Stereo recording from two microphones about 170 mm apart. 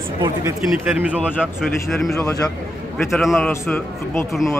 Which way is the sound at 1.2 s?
5° right (ahead or behind).